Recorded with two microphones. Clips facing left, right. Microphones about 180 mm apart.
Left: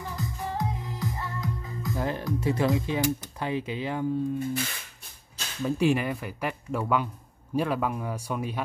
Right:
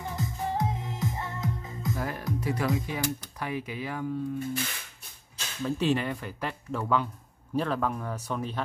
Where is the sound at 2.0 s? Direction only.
25° left (ahead or behind).